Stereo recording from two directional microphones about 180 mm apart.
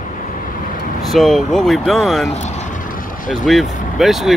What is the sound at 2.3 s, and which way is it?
Vehicle, 40° left (ahead or behind).